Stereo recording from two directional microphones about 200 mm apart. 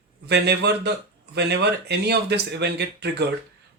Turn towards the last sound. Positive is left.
turn(degrees=-55)  # may be behind; listen again after turning